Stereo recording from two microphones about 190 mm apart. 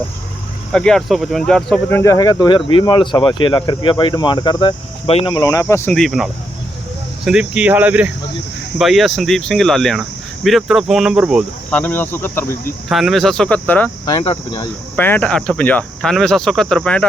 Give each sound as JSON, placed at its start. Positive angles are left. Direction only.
{"t": 0.7, "sound": "speech", "side_deg": 5}
{"t": 5.9, "sound": "speech", "side_deg": 0}
{"t": 11.7, "sound": "speech", "side_deg": 10}
{"t": 12.9, "sound": "speech", "side_deg": 0}
{"t": 14.0, "sound": "speech", "side_deg": 20}
{"t": 14.9, "sound": "speech", "side_deg": 10}